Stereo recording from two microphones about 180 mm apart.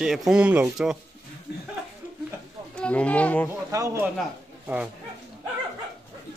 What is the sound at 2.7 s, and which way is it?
Speech, 5° left (ahead or behind).